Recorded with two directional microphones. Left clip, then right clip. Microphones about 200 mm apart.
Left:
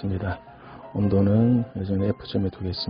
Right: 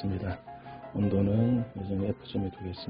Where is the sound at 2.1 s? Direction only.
30° left (ahead or behind).